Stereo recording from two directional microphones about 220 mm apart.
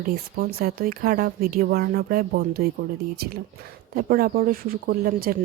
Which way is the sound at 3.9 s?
45° right (ahead or behind).